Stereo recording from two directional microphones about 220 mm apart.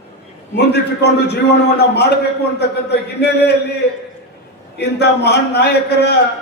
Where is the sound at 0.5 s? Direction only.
50° left (ahead or behind).